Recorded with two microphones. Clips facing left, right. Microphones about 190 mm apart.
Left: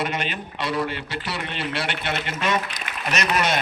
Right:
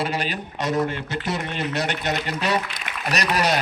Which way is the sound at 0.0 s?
35° right (ahead or behind).